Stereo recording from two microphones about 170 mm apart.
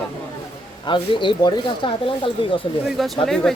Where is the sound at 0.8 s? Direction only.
30° left (ahead or behind).